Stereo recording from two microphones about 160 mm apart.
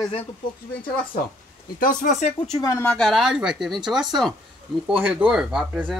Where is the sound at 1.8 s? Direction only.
55° left (ahead or behind).